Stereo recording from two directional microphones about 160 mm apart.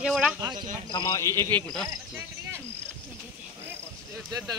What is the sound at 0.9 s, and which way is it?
Speech, 20° left (ahead or behind).